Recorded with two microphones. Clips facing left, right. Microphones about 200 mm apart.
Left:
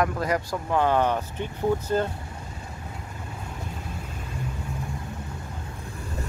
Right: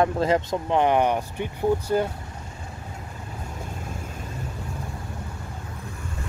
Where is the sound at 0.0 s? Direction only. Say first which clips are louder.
Right 4 dB; 25° right (ahead or behind).